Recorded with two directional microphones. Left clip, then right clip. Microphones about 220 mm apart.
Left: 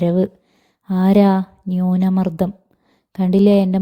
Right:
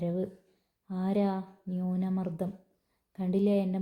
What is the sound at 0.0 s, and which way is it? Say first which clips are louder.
Speech: left 15 dB; 45° left (ahead or behind).